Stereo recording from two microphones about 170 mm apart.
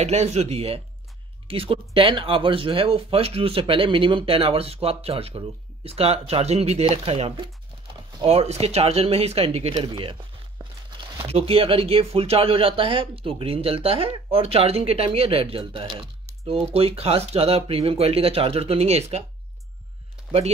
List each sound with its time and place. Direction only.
0.0 s speech: 40° right (ahead or behind)